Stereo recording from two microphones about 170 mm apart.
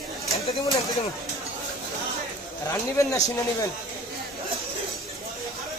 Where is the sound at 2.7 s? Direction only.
20° left (ahead or behind).